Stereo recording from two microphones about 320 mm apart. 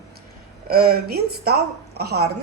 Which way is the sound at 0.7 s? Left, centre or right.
Right.